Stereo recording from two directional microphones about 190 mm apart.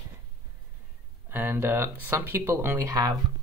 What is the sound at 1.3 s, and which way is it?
Speech, 10° right (ahead or behind).